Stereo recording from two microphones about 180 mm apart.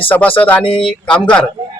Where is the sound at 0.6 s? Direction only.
30° left (ahead or behind).